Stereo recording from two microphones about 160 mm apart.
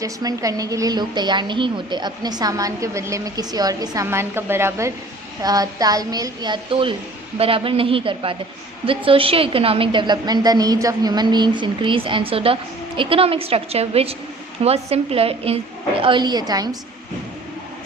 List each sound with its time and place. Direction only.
0.0 s a woman's voice: 20° right (ahead or behind)